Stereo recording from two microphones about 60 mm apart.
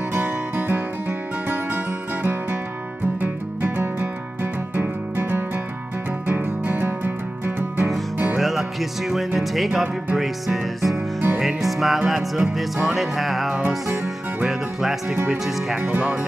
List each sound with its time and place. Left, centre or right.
0.1 s music: right
3.6 s music: right
8.4 s music: centre